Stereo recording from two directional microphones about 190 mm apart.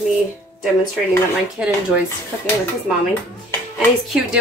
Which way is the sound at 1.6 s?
5° right (ahead or behind).